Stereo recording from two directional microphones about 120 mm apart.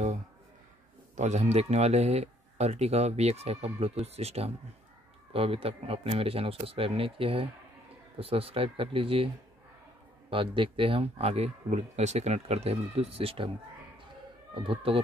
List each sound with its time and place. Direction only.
1.1 s speech: 85° right; by 9.3 s 50° right (ahead or behind)
10.3 s speech: 45° right (ahead or behind)
14.5 s speech: 50° right (ahead or behind)